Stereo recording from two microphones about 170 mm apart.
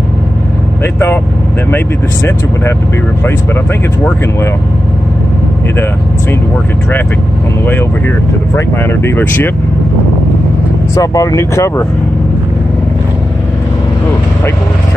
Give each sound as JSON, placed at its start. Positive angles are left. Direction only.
{"t": 0.9, "sound": "speech", "side_deg": 10}
{"t": 8.5, "sound": "speech", "side_deg": 15}
{"t": 11.0, "sound": "speech", "side_deg": 20}